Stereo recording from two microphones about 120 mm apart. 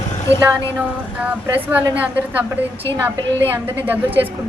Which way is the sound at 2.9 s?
20° right (ahead or behind).